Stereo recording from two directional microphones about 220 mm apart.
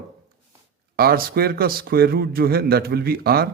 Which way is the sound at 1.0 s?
45° right (ahead or behind).